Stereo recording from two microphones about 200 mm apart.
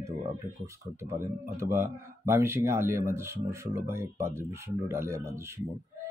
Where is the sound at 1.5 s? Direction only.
10° right (ahead or behind).